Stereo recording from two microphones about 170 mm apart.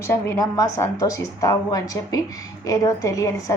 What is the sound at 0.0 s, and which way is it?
A woman's voice, 15° left (ahead or behind).